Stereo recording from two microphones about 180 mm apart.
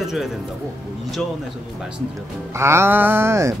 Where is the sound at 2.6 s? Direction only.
15° right (ahead or behind).